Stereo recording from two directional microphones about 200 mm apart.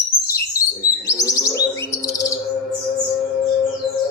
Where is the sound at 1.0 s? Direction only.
15° left (ahead or behind).